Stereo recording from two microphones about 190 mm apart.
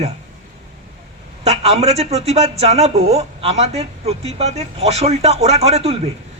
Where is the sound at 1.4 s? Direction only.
35° right (ahead or behind).